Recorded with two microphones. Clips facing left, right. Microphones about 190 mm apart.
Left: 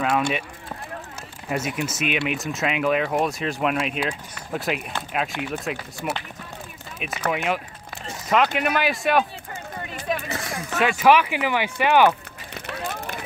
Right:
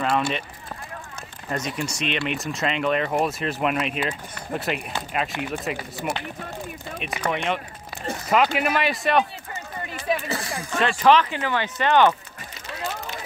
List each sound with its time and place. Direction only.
0.0 s speech: 5° left (ahead or behind)
1.5 s speech: 5° left (ahead or behind)
10.5 s speech: 5° left (ahead or behind)
12.6 s a sound: 60° left (ahead or behind)